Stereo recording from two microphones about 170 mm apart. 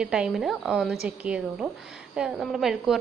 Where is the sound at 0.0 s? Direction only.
5° right (ahead or behind).